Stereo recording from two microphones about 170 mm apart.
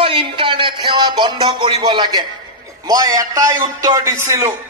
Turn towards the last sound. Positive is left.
turn(degrees=-15)  # may be behind; listen again after turning